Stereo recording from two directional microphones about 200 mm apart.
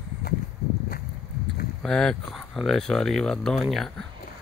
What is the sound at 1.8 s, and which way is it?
Speech, centre (ahead or behind).